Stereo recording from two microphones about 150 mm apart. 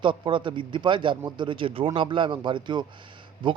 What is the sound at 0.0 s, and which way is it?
Speech, 35° right (ahead or behind).